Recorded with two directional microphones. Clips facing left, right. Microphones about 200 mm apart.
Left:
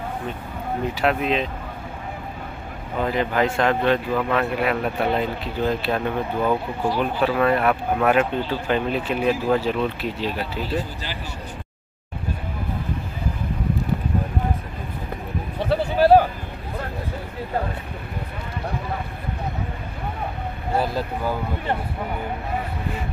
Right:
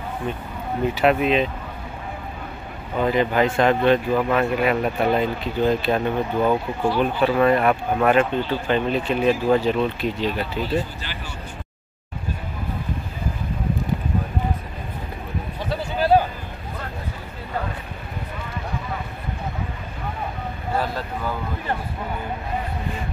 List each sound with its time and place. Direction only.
0.9 s speech: 5° right (ahead or behind)
3.0 s speech: centre (ahead or behind)
4.1 s speech: 10° right (ahead or behind)
4.6 s speech: centre (ahead or behind)
15.6 s a sound: 60° left (ahead or behind)